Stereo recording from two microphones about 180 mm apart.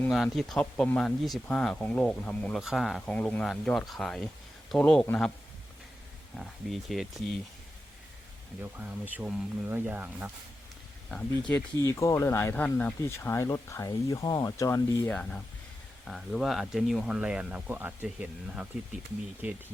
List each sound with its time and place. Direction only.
0.1 s speech: centre (ahead or behind)
6.3 s speech: centre (ahead or behind)
8.8 s speech: 10° right (ahead or behind)
11.1 s speech: 5° left (ahead or behind)
11.8 s speech: 15° left (ahead or behind); by 19.6 s 10° right (ahead or behind)